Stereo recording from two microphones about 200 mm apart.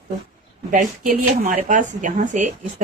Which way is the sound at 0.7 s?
40° right (ahead or behind).